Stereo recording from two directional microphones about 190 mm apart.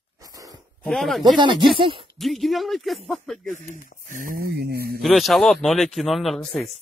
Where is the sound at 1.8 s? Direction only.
25° right (ahead or behind).